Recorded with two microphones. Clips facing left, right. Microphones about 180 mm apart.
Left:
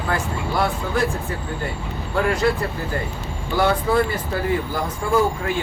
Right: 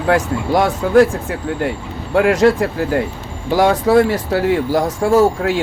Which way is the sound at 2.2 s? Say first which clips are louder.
Right 8 dB; 85° right.